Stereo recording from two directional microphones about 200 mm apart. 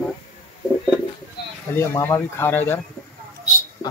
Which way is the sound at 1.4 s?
50° left (ahead or behind).